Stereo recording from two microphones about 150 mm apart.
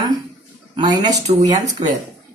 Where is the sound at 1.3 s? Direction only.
45° right (ahead or behind).